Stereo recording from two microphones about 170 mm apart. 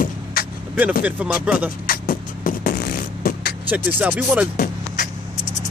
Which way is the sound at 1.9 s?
60° left (ahead or behind).